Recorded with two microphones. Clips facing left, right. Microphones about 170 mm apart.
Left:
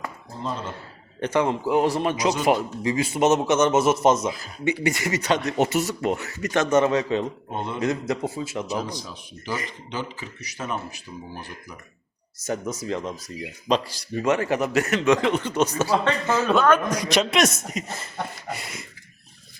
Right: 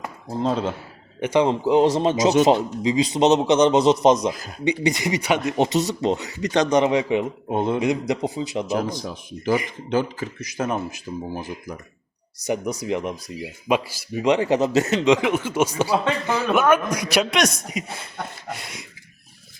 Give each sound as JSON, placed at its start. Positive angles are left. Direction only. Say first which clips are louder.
{"t": 0.4, "sound": "a man's voice", "louder": "right 8 dB", "side_deg": -90}
{"t": 1.2, "sound": "speech", "louder": "right 3 dB", "side_deg": -15}
{"t": 1.5, "sound": "speech", "louder": "right 4 dB", "side_deg": -25}
{"t": 4.3, "sound": "a man's voice", "louder": "right 3 dB", "side_deg": -45}
{"t": 4.6, "sound": "speech", "louder": "right 2 dB", "side_deg": -15}
{"t": 9.9, "sound": "a man's voice", "louder": "right 11 dB", "side_deg": -50}
{"t": 11.3, "sound": "speech", "louder": "right 7 dB", "side_deg": -15}